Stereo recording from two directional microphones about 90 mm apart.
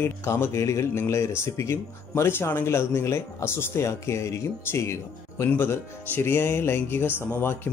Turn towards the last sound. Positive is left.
turn(degrees=25)  # may be behind; listen again after turning